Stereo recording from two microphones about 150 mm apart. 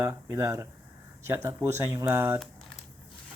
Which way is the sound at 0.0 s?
20° right (ahead or behind).